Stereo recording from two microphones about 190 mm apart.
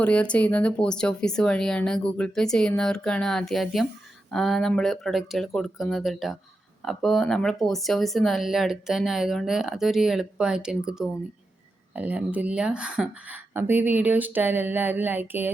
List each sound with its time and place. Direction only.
0.0 s speech: 5° left (ahead or behind); by 15.5 s 10° right (ahead or behind)